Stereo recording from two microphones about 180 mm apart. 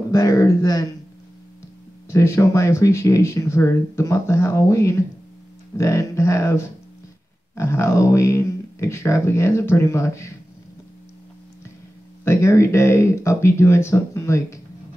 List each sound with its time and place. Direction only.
0.1 s speech: 20° left (ahead or behind)
2.0 s speech: 15° left (ahead or behind)
12.3 s speech: 15° left (ahead or behind)